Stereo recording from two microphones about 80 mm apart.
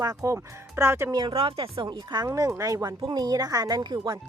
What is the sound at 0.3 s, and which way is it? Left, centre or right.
Speech, right.